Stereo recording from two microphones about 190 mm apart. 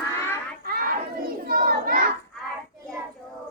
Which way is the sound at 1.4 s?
50° right (ahead or behind).